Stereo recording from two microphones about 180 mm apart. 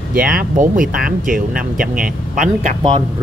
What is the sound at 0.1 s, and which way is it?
Speech, 50° right (ahead or behind).